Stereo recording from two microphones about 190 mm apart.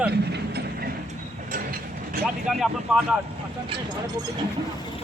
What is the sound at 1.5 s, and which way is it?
Mechanisms, 50° right (ahead or behind).